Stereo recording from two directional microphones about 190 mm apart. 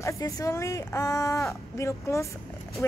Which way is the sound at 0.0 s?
15° left (ahead or behind).